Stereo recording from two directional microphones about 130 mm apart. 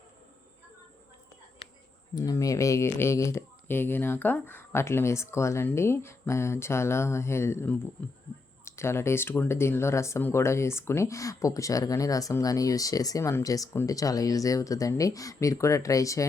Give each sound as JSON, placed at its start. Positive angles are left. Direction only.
{"t": 2.1, "sound": "speech", "side_deg": 25}